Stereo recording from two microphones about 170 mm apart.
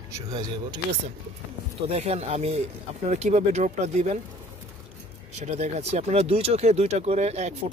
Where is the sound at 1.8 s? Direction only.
40° right (ahead or behind).